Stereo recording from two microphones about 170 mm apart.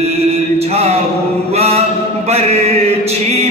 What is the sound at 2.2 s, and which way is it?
Mantra, 40° right (ahead or behind).